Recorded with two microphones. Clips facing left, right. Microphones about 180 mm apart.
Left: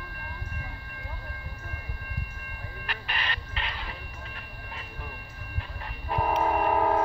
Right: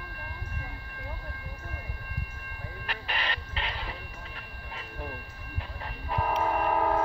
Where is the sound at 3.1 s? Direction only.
25° right (ahead or behind).